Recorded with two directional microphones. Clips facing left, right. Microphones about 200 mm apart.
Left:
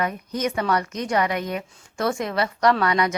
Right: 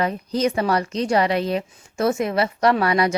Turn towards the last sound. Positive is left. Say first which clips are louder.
# right 2 dB
turn(degrees=-30)  # may be behind; listen again after turning